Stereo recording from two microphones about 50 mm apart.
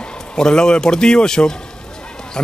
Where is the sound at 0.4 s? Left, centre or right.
Centre.